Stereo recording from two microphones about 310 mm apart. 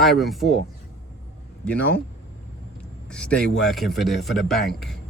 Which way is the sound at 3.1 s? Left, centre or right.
Centre.